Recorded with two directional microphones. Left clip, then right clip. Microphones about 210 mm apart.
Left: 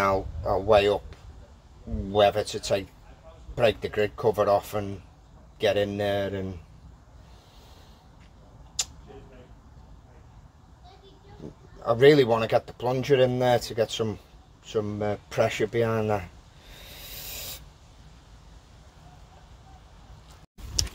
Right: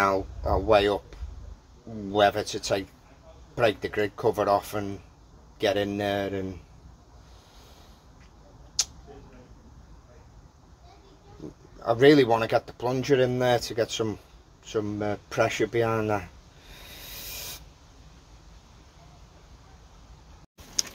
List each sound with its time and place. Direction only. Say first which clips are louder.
0.0 s speech: even; 5° right (ahead or behind)
2.1 s speech: left 1 dB; 5° right (ahead or behind)
11.8 s speech: even; 5° right (ahead or behind)